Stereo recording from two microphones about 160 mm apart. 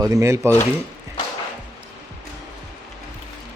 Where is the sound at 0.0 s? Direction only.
20° right (ahead or behind).